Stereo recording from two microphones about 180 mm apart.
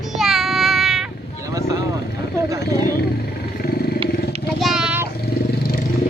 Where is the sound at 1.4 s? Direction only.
20° right (ahead or behind).